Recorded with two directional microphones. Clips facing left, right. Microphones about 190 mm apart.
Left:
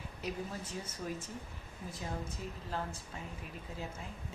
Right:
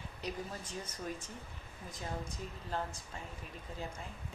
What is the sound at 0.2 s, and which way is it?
Speech, 5° left (ahead or behind).